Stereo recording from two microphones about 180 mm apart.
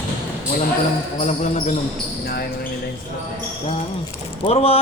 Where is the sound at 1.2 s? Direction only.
40° left (ahead or behind).